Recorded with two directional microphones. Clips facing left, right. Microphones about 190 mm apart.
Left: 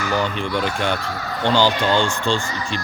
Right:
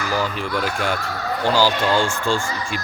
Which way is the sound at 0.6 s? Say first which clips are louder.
Left 1 dB; 5° right (ahead or behind).